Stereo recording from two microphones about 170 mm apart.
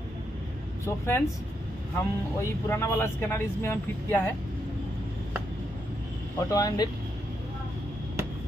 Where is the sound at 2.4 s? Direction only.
15° left (ahead or behind).